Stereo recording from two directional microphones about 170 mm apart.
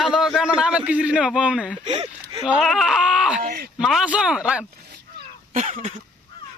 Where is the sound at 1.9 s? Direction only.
25° right (ahead or behind).